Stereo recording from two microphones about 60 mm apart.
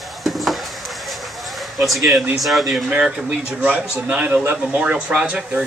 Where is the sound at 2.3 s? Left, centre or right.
Centre.